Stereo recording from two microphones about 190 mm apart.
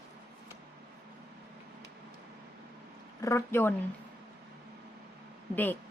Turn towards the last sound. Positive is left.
turn(degrees=10)  # may be behind; listen again after turning